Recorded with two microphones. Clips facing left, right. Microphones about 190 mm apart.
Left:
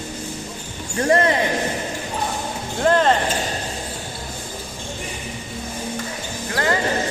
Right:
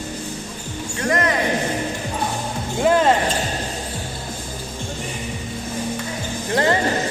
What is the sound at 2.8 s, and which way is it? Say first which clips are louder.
Music: right 1 dB; 10° right (ahead or behind).